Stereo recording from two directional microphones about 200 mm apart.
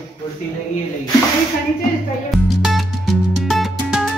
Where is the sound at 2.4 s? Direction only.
Centre (ahead or behind).